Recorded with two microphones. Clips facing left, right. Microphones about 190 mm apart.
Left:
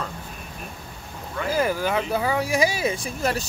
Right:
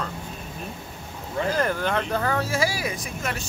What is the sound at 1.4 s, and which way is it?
Speech, 5° left (ahead or behind).